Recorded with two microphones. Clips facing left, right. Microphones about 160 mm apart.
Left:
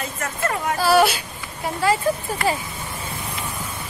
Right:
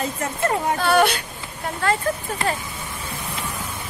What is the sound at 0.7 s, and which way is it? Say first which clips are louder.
Speech: left 4 dB; 5° left (ahead or behind).